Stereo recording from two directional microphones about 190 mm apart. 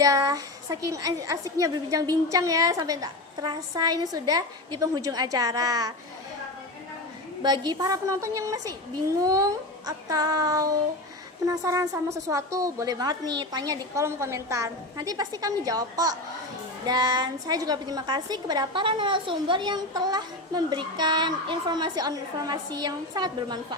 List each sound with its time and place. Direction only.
0.0 s a woman's voice: 20° right (ahead or behind)
7.4 s a woman's voice: 20° right (ahead or behind)